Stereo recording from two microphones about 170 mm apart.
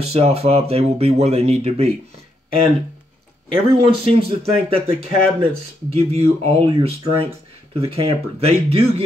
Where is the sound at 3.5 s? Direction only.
35° right (ahead or behind).